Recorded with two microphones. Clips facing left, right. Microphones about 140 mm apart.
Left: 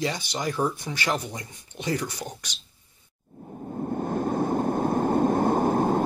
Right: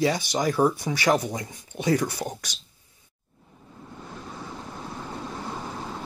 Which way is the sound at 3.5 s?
50° left (ahead or behind).